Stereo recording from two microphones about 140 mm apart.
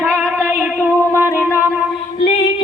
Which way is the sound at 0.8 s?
15° left (ahead or behind).